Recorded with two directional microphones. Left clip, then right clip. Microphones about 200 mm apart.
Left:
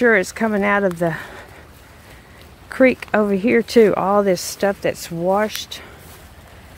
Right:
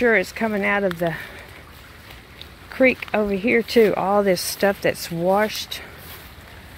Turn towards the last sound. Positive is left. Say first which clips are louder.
# left 1 dB
turn(degrees=5)  # may be behind; listen again after turning